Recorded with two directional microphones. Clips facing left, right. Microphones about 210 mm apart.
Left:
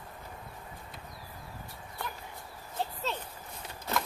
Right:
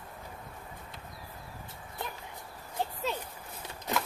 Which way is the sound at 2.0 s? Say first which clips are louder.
Right 1 dB; 20° right (ahead or behind).